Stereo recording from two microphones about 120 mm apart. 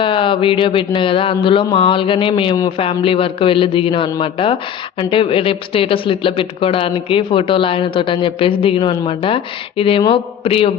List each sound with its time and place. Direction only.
0.0 s speech: 45° left (ahead or behind)